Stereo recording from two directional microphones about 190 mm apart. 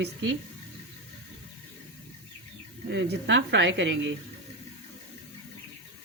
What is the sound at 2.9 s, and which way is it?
A woman's voice, 65° right (ahead or behind).